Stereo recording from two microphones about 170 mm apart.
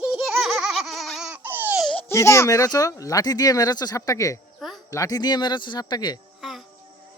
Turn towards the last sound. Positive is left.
turn(degrees=0)  # may be behind; listen again after turning